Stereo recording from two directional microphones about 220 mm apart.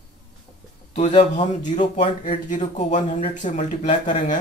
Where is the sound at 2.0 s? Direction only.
35° left (ahead or behind).